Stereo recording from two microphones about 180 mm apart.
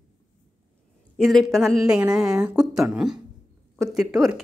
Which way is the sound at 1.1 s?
Centre (ahead or behind).